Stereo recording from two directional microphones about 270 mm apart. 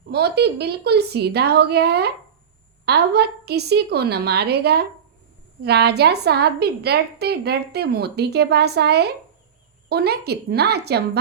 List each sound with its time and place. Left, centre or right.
0.1 s a woman's voice: right